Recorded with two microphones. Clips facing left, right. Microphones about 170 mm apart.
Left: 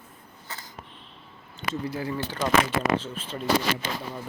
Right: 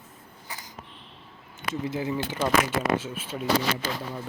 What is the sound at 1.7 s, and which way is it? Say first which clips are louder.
Speech: right 1 dB; 20° right (ahead or behind).